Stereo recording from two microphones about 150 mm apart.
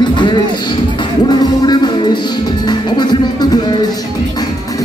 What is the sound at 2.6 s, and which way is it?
Speech, 30° left (ahead or behind).